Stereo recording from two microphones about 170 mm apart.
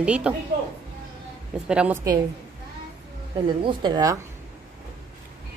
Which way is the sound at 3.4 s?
25° right (ahead or behind).